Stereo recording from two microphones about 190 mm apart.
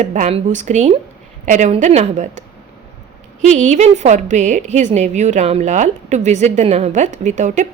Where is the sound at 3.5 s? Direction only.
40° right (ahead or behind).